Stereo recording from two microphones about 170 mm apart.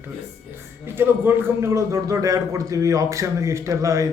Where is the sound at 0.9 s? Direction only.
15° right (ahead or behind).